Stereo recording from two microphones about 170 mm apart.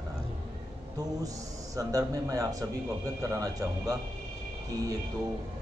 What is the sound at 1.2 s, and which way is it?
A man's voice, 20° right (ahead or behind).